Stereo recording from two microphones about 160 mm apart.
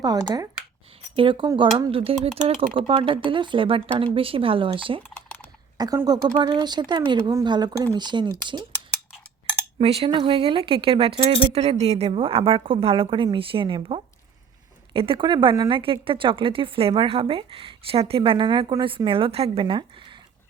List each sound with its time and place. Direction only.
0.0 s speech: 25° right (ahead or behind)
5.1 s typing: 10° left (ahead or behind)
5.7 s speech: 25° right (ahead or behind)
9.7 s speech: 35° right (ahead or behind)